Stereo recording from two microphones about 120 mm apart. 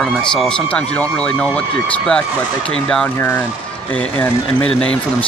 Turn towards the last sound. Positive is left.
turn(degrees=10)  # may be behind; listen again after turning